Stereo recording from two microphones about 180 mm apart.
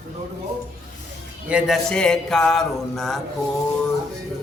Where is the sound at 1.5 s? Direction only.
5° right (ahead or behind).